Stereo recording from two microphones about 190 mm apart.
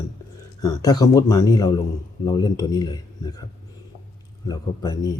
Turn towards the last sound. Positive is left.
turn(degrees=20)  # may be behind; listen again after turning